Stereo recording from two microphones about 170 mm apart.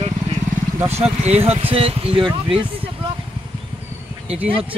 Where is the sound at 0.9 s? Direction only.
40° right (ahead or behind).